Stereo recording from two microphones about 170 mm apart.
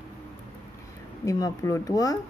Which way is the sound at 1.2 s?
20° left (ahead or behind).